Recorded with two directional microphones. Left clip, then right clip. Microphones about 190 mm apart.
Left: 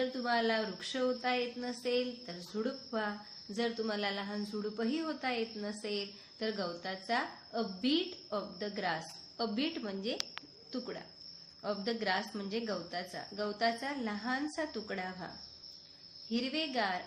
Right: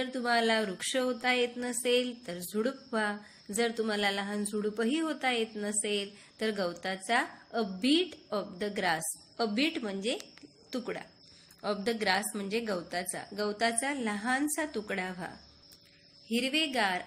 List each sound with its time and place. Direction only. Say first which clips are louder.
0.0 s a woman's voice: right 3 dB; 30° right (ahead or behind)
16.3 s a woman's voice: right 5 dB; 25° right (ahead or behind)